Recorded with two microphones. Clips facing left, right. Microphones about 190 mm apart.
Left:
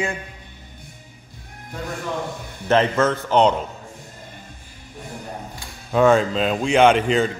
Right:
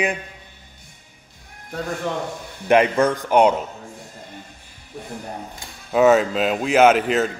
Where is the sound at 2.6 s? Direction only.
15° right (ahead or behind).